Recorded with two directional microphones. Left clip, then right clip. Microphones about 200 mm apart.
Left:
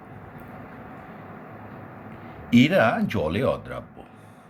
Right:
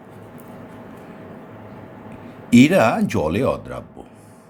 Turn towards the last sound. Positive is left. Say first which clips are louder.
# right 3 dB
turn(degrees=-30)  # may be behind; listen again after turning